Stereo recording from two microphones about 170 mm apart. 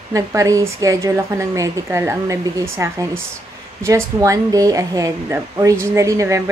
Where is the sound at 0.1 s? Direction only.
20° right (ahead or behind).